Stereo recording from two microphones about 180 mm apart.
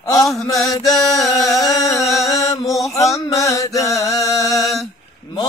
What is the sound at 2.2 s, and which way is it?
Chant, 20° left (ahead or behind).